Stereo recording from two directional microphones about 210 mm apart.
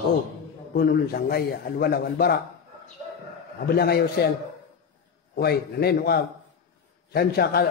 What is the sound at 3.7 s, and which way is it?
Speech, 50° left (ahead or behind).